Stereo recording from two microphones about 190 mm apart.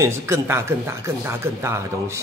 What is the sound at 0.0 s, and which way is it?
A man's voice, 15° right (ahead or behind).